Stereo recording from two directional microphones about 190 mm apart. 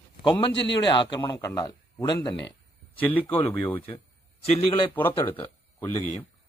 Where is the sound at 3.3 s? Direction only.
25° left (ahead or behind).